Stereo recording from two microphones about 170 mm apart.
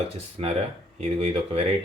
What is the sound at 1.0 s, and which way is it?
Speech, 35° right (ahead or behind).